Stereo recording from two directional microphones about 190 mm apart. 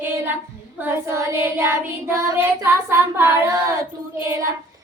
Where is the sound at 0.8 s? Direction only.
15° right (ahead or behind).